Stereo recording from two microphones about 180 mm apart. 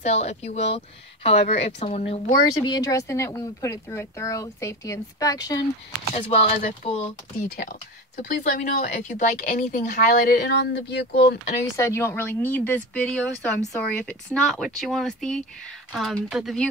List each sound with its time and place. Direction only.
0.0 s speech: 35° left (ahead or behind)
2.7 s speech: 20° left (ahead or behind)
6.1 s speech: 35° left (ahead or behind)
8.2 s speech: 45° left (ahead or behind); by 11.3 s 65° left (ahead or behind)
11.7 s speech: 15° left (ahead or behind); by 16.6 s centre (ahead or behind)